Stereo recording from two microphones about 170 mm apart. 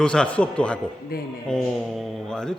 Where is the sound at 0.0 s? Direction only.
5° left (ahead or behind).